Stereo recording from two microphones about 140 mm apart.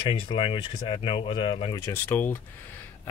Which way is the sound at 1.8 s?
15° left (ahead or behind).